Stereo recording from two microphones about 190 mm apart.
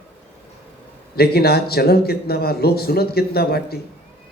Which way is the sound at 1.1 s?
55° left (ahead or behind).